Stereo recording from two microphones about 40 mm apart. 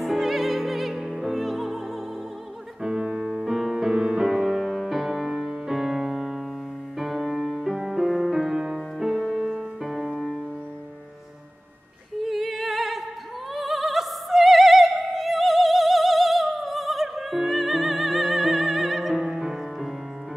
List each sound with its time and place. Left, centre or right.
0.0 s music: centre
2.8 s music: centre
4.3 s music: centre
12.2 s music: centre
13.5 s opera: centre